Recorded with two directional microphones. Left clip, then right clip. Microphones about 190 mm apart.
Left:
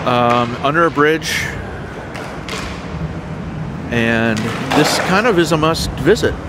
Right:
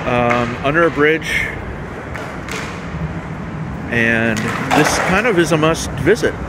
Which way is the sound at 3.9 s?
15° left (ahead or behind).